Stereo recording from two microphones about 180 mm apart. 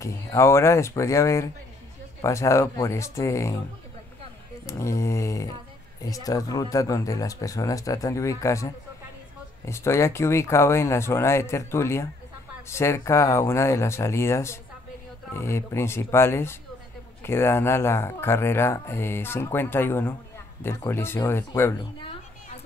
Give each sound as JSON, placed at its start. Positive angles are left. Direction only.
{"t": 0.0, "sound": "speech", "side_deg": 15}
{"t": 4.6, "sound": "speech", "side_deg": 15}